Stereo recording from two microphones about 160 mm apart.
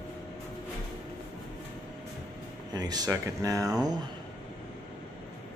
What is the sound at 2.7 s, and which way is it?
Speech, 25° right (ahead or behind).